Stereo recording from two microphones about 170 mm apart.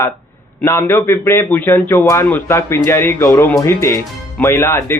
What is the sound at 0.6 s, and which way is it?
A man's voice, 15° left (ahead or behind).